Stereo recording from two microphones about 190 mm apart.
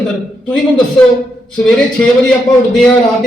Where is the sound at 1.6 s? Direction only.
5° left (ahead or behind).